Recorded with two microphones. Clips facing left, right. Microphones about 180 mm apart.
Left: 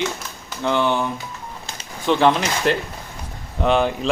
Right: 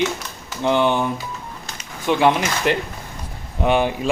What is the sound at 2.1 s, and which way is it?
Speech, 10° right (ahead or behind).